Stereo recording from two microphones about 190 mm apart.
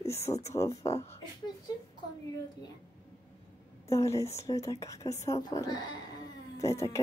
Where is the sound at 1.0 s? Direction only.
20° left (ahead or behind).